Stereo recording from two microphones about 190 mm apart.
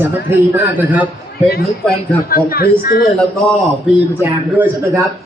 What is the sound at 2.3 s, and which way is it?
Speech, 50° left (ahead or behind).